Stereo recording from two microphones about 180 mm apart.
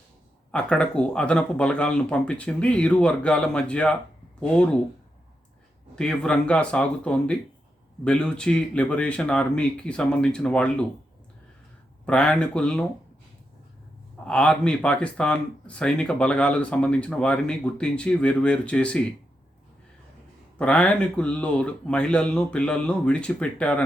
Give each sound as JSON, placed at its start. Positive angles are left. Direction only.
{"t": 0.5, "sound": "speech", "side_deg": 5}
{"t": 6.0, "sound": "speech", "side_deg": 5}
{"t": 12.0, "sound": "speech", "side_deg": 5}
{"t": 14.3, "sound": "speech", "side_deg": 5}
{"t": 20.6, "sound": "speech", "side_deg": 5}